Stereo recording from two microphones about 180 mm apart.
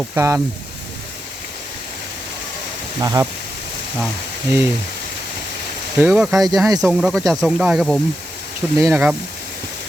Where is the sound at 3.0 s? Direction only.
20° right (ahead or behind).